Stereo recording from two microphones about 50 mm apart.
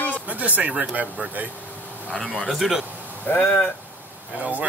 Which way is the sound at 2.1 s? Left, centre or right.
Centre.